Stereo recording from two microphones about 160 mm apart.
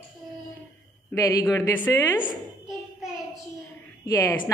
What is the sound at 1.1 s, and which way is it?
A woman's voice, 20° left (ahead or behind).